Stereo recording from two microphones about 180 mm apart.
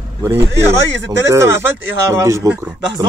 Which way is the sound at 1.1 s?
15° right (ahead or behind).